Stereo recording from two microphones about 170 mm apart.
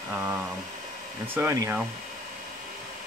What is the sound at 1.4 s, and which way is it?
Speech, 15° right (ahead or behind).